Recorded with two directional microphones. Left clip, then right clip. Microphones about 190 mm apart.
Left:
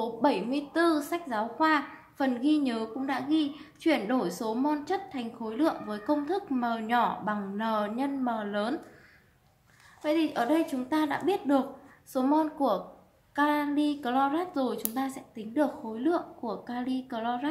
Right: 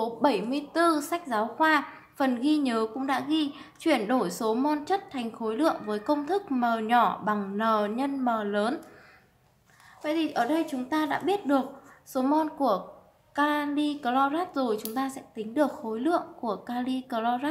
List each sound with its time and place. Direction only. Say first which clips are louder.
0.0 s a woman's voice: right 2 dB; 15° right (ahead or behind)
10.0 s a woman's voice: even; 5° right (ahead or behind)